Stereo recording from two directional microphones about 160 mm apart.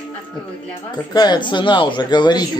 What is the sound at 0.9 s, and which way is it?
Speech, 25° left (ahead or behind).